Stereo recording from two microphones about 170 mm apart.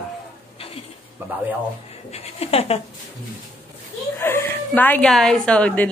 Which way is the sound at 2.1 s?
35° left (ahead or behind).